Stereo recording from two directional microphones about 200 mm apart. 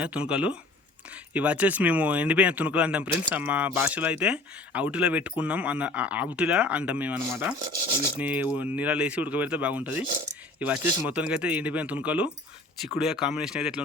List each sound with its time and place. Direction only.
0.0 s speech: 5° right (ahead or behind)